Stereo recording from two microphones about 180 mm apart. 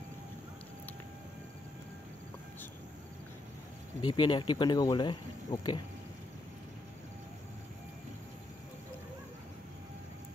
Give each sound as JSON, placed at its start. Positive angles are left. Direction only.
{"t": 4.0, "sound": "speech", "side_deg": 25}